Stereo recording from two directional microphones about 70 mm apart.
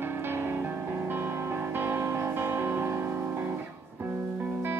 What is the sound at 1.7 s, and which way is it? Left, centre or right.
Music, right.